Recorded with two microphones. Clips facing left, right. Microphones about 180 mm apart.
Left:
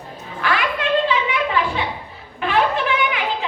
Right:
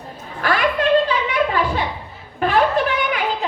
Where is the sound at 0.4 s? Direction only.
40° right (ahead or behind).